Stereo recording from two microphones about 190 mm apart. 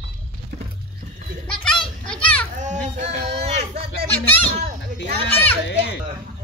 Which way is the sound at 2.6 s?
40° right (ahead or behind).